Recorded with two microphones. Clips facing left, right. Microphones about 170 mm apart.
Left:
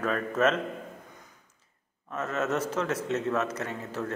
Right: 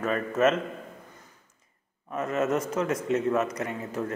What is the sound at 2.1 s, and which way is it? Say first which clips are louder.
Speech: right 3 dB; 10° right (ahead or behind).